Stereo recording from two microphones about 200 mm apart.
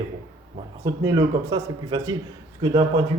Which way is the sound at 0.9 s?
20° right (ahead or behind).